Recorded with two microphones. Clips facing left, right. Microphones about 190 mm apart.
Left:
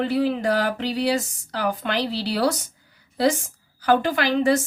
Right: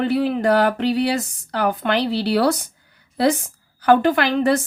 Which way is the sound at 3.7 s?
60° right (ahead or behind).